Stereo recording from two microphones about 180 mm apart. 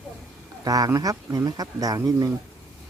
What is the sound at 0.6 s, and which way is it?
Speech, 20° right (ahead or behind).